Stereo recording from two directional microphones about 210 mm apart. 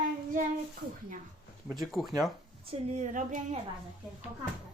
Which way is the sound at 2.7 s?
30° right (ahead or behind).